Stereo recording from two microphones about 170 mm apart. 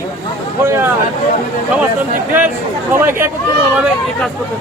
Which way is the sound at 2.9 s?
15° right (ahead or behind).